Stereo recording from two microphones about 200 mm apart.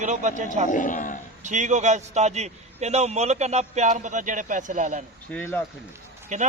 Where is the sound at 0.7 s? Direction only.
40° left (ahead or behind).